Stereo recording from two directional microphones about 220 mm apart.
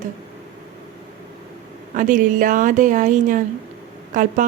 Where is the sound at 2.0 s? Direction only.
35° right (ahead or behind).